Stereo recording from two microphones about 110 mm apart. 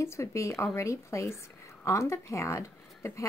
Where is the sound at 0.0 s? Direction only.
25° left (ahead or behind).